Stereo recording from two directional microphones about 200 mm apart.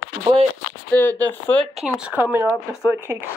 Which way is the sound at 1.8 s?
5° right (ahead or behind).